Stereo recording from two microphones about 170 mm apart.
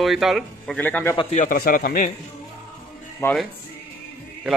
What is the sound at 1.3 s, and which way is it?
Speech, 50° left (ahead or behind).